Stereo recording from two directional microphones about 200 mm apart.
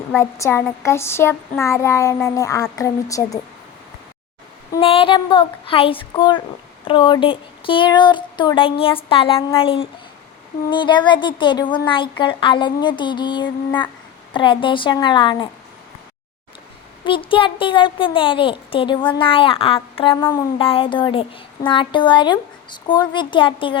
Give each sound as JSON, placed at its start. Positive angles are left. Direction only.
{"t": 0.1, "sound": "a child's voice", "side_deg": 15}
{"t": 4.7, "sound": "a woman's voice", "side_deg": 25}
{"t": 17.0, "sound": "a woman's voice", "side_deg": 25}